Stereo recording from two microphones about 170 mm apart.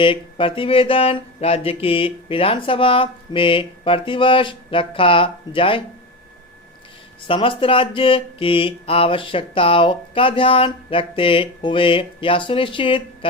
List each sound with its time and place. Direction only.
0.0 s speech: 30° left (ahead or behind)
7.3 s speech: 30° left (ahead or behind)